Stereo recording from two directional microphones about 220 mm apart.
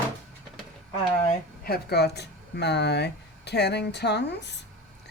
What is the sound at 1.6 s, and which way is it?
Speech, 45° left (ahead or behind).